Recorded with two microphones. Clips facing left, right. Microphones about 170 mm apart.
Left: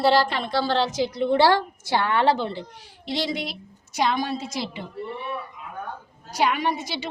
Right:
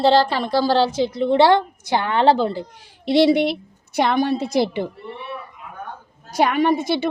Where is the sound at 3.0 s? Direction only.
65° right (ahead or behind).